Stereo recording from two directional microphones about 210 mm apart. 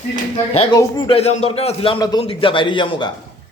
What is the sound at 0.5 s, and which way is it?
Speech, 30° left (ahead or behind).